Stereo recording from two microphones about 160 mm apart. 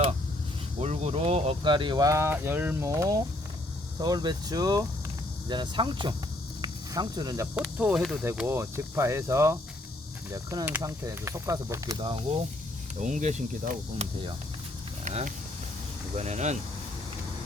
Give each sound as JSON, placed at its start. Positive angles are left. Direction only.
{"t": 0.8, "sound": "speech", "side_deg": -40}
{"t": 6.6, "sound": "cricket", "side_deg": -25}
{"t": 7.8, "sound": "speech", "side_deg": -5}
{"t": 13.0, "sound": "speech", "side_deg": -50}